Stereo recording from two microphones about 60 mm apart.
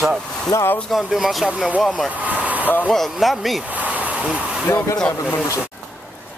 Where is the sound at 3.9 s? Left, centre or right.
Right.